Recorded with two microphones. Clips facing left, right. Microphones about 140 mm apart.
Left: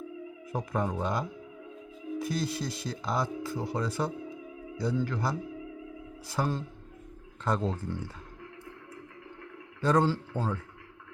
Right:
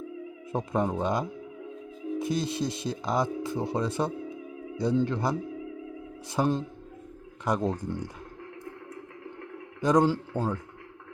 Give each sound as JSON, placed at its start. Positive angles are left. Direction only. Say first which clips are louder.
{"t": 0.5, "sound": "speech", "louder": "right 4 dB", "side_deg": -20}
{"t": 9.8, "sound": "speech", "louder": "right 3 dB", "side_deg": -15}